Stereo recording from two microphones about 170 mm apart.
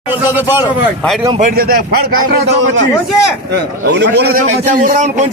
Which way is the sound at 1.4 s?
55° right (ahead or behind).